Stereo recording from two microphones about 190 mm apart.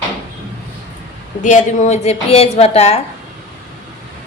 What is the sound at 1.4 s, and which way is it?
A woman's voice, 40° left (ahead or behind).